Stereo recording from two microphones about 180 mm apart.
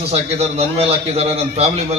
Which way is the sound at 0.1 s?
35° right (ahead or behind).